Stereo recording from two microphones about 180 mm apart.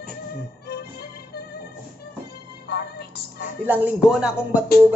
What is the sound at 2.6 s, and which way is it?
Music, 60° left (ahead or behind).